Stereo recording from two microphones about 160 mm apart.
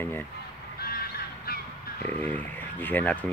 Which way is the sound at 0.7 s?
75° left (ahead or behind).